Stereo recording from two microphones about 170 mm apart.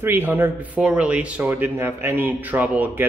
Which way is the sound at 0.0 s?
10° right (ahead or behind).